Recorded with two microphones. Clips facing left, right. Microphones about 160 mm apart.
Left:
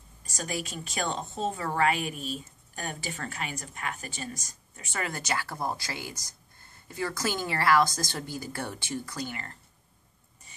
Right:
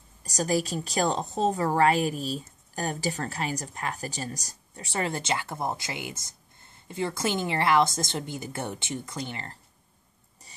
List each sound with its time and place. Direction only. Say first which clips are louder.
0.2 s a woman's voice: right 8 dB; 40° right (ahead or behind)